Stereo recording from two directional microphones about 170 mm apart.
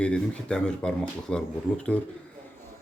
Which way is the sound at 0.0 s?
5° left (ahead or behind).